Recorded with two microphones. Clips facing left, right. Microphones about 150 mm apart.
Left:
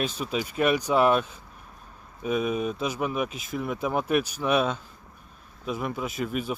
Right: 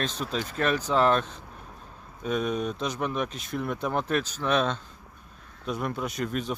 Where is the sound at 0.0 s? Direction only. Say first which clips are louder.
Left 2 dB; 10° left (ahead or behind).